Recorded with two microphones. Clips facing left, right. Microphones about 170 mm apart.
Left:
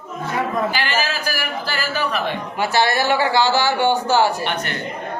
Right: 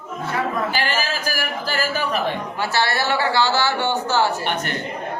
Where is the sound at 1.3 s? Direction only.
45° right (ahead or behind).